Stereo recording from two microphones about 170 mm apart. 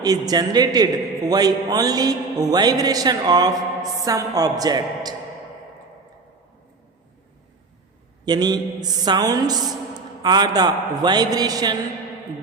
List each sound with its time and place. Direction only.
0.0 s a man's voice: 20° right (ahead or behind)
8.2 s a man's voice: 25° right (ahead or behind)